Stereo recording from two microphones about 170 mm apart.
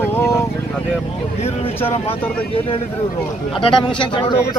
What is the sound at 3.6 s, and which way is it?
Speech, 30° left (ahead or behind).